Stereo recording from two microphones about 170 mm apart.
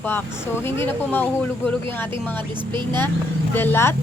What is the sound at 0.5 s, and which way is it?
Speech, 15° left (ahead or behind).